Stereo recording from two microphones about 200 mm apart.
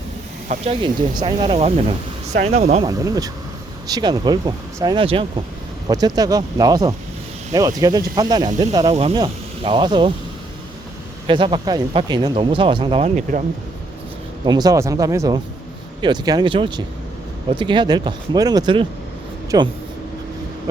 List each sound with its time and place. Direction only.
0.4 s speech: 35° right (ahead or behind)
2.8 s speech: 15° right (ahead or behind)
8.9 s speech: 30° right (ahead or behind)
11.3 s speech: 25° right (ahead or behind)
14.4 s speech: 20° right (ahead or behind)